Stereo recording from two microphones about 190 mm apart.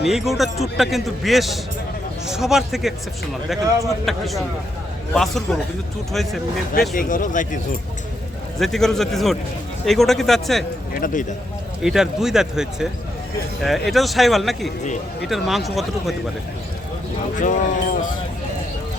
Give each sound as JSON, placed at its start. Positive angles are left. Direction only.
{"t": 0.0, "sound": "speech", "side_deg": 0}
{"t": 6.9, "sound": "speech", "side_deg": 45}
{"t": 8.5, "sound": "speech", "side_deg": 0}
{"t": 10.9, "sound": "speech", "side_deg": 45}
{"t": 11.8, "sound": "speech", "side_deg": 0}
{"t": 17.4, "sound": "speech", "side_deg": 40}